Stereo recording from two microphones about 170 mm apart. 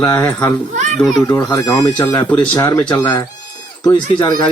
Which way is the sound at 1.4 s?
20° left (ahead or behind).